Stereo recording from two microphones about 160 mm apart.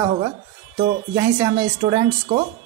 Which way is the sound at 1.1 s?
20° right (ahead or behind).